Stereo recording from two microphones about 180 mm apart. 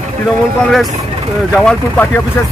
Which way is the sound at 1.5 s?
5° left (ahead or behind).